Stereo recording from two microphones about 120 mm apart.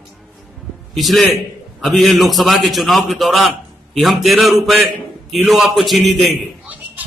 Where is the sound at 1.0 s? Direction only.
Centre (ahead or behind).